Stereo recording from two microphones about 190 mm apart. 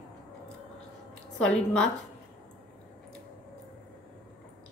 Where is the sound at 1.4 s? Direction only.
5° left (ahead or behind).